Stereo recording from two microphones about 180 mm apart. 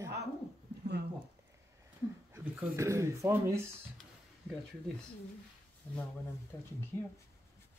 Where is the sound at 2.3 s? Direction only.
15° right (ahead or behind).